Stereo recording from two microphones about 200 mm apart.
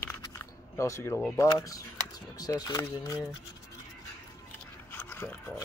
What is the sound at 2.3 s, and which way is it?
Speech, 20° left (ahead or behind).